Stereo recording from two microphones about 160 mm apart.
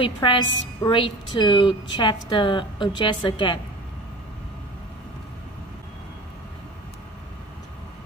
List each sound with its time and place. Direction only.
0.0 s a woman's voice: 30° left (ahead or behind)